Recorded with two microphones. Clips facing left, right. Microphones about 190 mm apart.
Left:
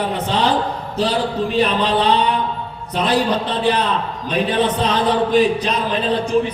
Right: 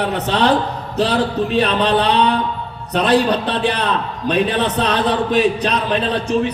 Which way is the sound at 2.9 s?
70° right (ahead or behind).